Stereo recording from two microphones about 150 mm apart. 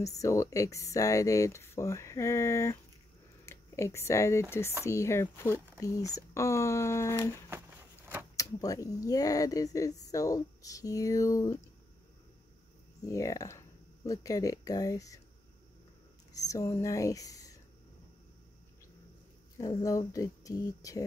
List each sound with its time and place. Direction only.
0.2 s speech: 20° left (ahead or behind)
7.4 s vehicle: 15° right (ahead or behind)
8.4 s speech: 20° left (ahead or behind)
13.0 s speech: 20° left (ahead or behind)
16.3 s speech: 20° left (ahead or behind)
19.6 s speech: 20° left (ahead or behind)